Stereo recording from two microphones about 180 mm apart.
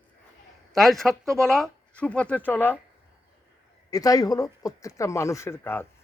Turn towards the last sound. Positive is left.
turn(degrees=10)  # may be behind; listen again after turning